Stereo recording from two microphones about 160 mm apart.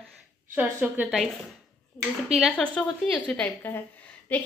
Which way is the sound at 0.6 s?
10° right (ahead or behind).